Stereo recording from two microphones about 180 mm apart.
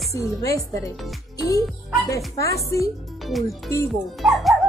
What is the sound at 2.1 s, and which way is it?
Speech, 15° left (ahead or behind).